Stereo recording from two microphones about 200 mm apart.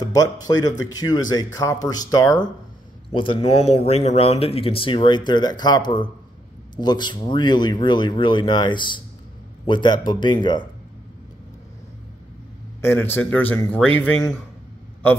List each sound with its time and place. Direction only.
0.0 s speech: 20° left (ahead or behind)
12.8 s a man's voice: 10° left (ahead or behind)